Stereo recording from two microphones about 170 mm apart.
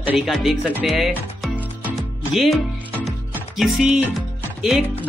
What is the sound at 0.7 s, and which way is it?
Music, centre (ahead or behind).